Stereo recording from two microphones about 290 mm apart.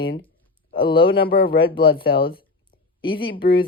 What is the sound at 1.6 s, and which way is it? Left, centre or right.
Speech, centre.